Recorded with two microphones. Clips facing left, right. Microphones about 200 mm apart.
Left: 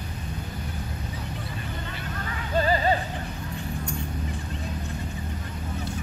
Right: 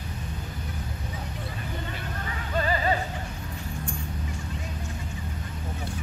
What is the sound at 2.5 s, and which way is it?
Music, 30° left (ahead or behind).